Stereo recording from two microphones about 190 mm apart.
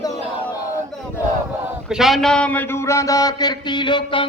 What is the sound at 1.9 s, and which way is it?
A man's voice, centre (ahead or behind).